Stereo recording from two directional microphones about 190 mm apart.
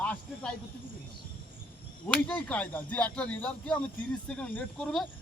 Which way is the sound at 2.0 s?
5° left (ahead or behind).